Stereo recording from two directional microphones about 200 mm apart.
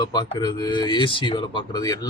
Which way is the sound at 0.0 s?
20° left (ahead or behind).